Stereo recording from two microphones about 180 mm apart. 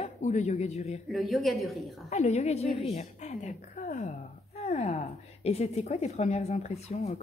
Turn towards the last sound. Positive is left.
turn(degrees=40)  # may be behind; listen again after turning